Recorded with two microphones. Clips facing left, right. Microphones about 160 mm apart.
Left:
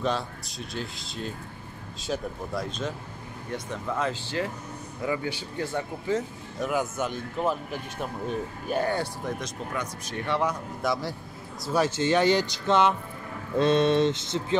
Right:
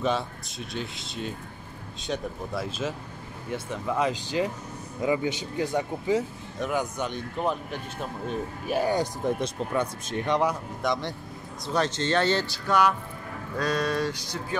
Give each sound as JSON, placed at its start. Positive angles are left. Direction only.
{"t": 0.0, "sound": "speech", "side_deg": 0}
{"t": 3.5, "sound": "speech", "side_deg": -15}
{"t": 6.6, "sound": "speech", "side_deg": 5}
{"t": 8.6, "sound": "speech", "side_deg": -10}
{"t": 9.4, "sound": "speech", "side_deg": -25}
{"t": 10.8, "sound": "speech", "side_deg": 5}
{"t": 13.6, "sound": "a sound", "side_deg": 25}